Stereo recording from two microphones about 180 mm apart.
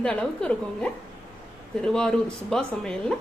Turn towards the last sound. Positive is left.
turn(degrees=5)  # may be behind; listen again after turning